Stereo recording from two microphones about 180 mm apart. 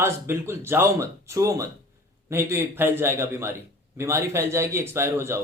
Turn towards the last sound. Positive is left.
turn(degrees=-15)  # may be behind; listen again after turning